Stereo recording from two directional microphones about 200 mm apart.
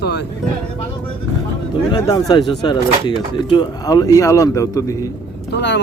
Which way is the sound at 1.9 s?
20° left (ahead or behind).